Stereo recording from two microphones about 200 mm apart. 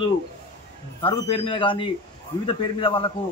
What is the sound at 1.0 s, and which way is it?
A man's voice, 25° left (ahead or behind).